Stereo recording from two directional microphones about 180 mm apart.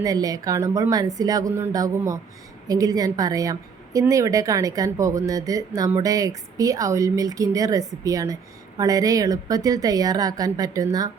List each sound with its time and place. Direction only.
0.0 s a woman's voice: 20° right (ahead or behind)